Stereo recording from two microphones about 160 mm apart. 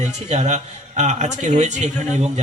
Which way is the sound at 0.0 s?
45° right (ahead or behind).